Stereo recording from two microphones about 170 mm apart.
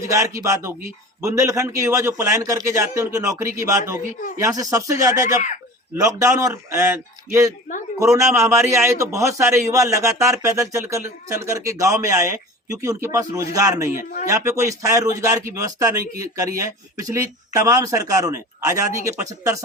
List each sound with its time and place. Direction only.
0.0 s a man's voice: 20° right (ahead or behind)
14.0 s speech: 55° left (ahead or behind)
14.3 s a man's voice: 20° right (ahead or behind)